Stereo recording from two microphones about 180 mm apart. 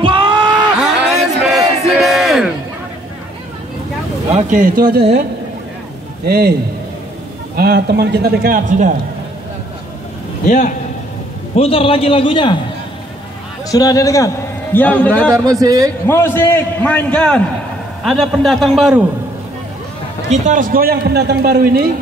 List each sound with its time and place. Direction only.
0.0 s a sound: 25° right (ahead or behind)
0.7 s a sound: 5° right (ahead or behind)
4.3 s speech: 40° right (ahead or behind); by 5.2 s 65° right (ahead or behind)
6.2 s a man's voice: 60° right (ahead or behind)
7.5 s a man's voice: 60° right (ahead or behind); by 8.9 s 45° right (ahead or behind)
10.4 s a man's voice: 45° left (ahead or behind)
11.5 s a man's voice: 30° left (ahead or behind)
13.7 s a man's voice: 20° left (ahead or behind)
15.6 s a man's voice: 20° right (ahead or behind)
16.1 s a man's voice: 10° left (ahead or behind); by 19.0 s 5° right (ahead or behind)
20.2 s a man's voice: 45° right (ahead or behind); by 21.8 s 60° right (ahead or behind)